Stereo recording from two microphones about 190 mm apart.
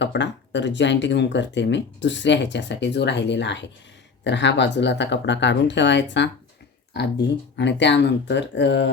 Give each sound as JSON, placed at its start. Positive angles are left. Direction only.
{"t": 0.0, "sound": "speech", "side_deg": 65}